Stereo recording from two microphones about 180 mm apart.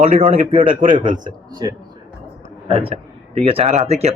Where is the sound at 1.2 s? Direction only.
25° right (ahead or behind).